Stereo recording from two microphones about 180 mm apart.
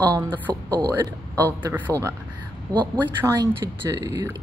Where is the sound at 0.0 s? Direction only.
25° right (ahead or behind).